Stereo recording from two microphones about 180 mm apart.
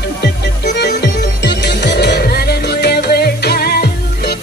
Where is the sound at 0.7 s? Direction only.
70° left (ahead or behind).